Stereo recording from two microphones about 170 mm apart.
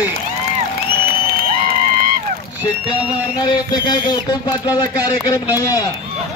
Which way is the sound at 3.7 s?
25° left (ahead or behind).